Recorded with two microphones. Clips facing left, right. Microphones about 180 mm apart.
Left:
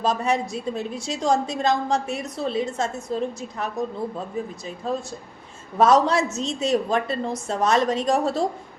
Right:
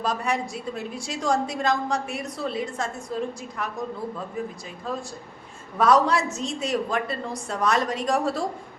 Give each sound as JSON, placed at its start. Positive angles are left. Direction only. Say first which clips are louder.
{"t": 0.0, "sound": "a woman's voice", "louder": "left 4 dB", "side_deg": 20}
{"t": 4.9, "sound": "a woman's voice", "louder": "left 4 dB", "side_deg": 25}